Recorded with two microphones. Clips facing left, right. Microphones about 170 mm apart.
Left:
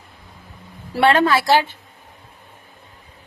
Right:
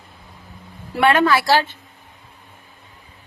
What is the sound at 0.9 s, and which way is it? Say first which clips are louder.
Speech: even; 30° left (ahead or behind).